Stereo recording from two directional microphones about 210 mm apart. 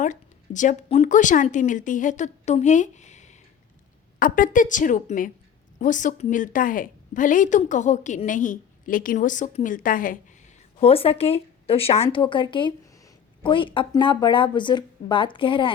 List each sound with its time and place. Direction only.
0.0 s a woman's voice: 35° left (ahead or behind)
10.8 s speech: 30° left (ahead or behind)